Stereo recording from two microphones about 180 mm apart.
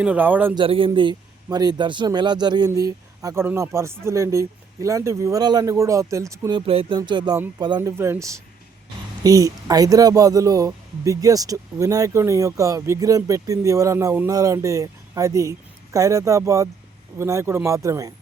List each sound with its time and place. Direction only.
0.0 s speech: 10° right (ahead or behind)
0.5 s speech: 30° right (ahead or behind)
6.6 s speech: 30° right (ahead or behind)
7.3 s speech: 15° right (ahead or behind)